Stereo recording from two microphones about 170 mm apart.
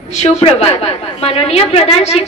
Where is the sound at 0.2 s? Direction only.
40° left (ahead or behind).